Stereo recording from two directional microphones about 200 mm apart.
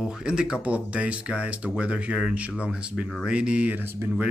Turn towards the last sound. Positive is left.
turn(degrees=-10)  # may be behind; listen again after turning